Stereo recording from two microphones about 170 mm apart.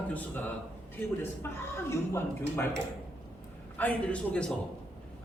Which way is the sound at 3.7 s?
10° left (ahead or behind).